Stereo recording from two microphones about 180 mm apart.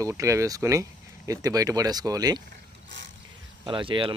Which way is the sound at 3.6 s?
30° right (ahead or behind).